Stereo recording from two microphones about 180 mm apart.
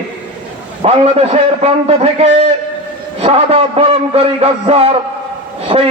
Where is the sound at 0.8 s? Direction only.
35° right (ahead or behind).